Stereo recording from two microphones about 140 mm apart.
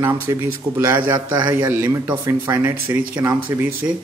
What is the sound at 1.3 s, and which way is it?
Speech, 30° right (ahead or behind).